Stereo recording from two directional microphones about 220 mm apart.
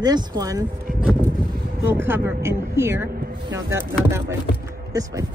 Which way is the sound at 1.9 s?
10° right (ahead or behind).